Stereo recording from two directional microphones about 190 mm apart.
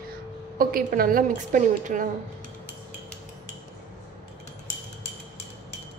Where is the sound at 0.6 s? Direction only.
50° right (ahead or behind).